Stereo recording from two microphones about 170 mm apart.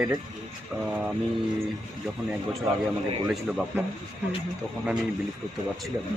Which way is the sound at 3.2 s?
5° right (ahead or behind).